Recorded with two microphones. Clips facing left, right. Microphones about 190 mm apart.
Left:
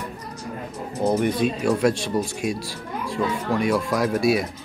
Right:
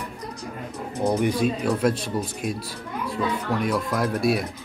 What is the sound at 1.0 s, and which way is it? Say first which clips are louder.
Speech: left 2 dB; 20° left (ahead or behind).